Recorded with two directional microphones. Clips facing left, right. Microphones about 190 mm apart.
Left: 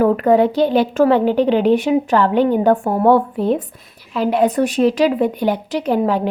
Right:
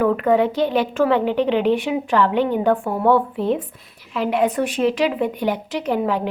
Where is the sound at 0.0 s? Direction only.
35° left (ahead or behind).